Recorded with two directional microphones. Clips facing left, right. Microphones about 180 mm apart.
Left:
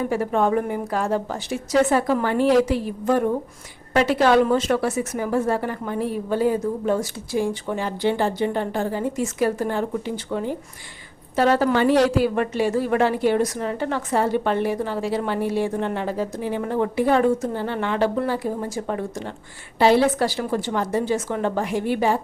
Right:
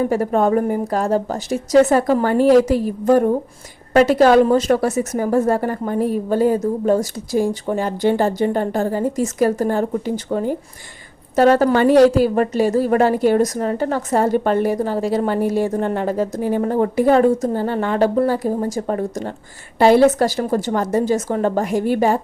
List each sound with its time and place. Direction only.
0.1 s a woman's voice: 40° right (ahead or behind)